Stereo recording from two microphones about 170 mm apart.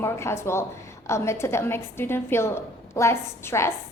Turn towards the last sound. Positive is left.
turn(degrees=15)  # may be behind; listen again after turning